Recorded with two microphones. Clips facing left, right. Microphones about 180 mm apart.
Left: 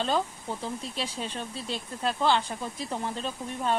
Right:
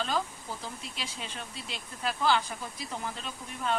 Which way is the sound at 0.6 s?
35° left (ahead or behind).